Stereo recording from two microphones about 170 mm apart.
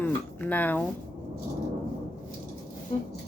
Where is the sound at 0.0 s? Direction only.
10° left (ahead or behind).